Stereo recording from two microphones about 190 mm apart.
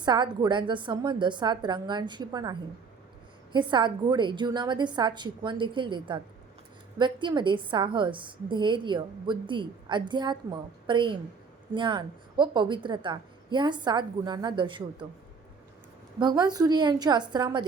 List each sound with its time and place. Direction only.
0.0 s a woman's voice: 25° right (ahead or behind)
16.2 s a woman's voice: 20° right (ahead or behind)